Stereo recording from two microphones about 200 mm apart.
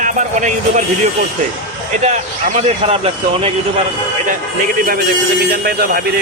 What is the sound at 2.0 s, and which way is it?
Speech, 35° right (ahead or behind).